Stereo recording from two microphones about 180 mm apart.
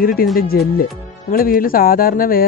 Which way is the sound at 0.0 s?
55° left (ahead or behind).